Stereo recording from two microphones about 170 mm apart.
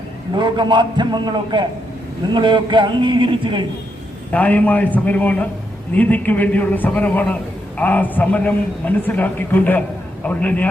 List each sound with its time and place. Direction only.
0.3 s a man's voice: 25° right (ahead or behind)
4.3 s a man's voice: 10° left (ahead or behind)